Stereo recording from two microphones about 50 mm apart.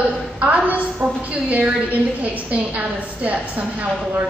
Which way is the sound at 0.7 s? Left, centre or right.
Right.